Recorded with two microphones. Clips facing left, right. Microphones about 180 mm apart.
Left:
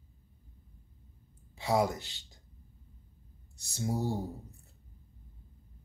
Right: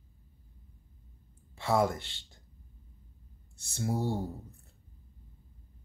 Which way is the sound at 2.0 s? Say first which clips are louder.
Even; 40° left (ahead or behind).